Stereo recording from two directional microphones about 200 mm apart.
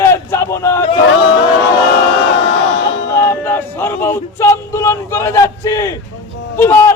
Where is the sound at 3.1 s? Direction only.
10° left (ahead or behind).